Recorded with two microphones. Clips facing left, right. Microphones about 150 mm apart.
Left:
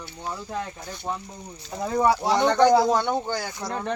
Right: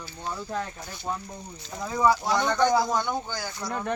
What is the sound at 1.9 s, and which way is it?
Speech, 30° left (ahead or behind).